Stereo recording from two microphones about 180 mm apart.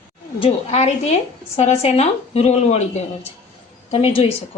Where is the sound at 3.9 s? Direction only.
35° left (ahead or behind).